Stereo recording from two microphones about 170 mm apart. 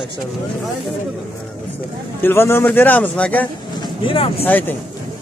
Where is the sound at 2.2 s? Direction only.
15° left (ahead or behind).